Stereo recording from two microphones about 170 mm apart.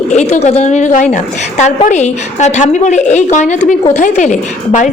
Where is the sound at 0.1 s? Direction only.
40° left (ahead or behind).